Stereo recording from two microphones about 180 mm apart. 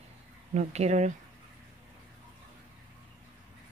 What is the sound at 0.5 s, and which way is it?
Speech, 40° right (ahead or behind).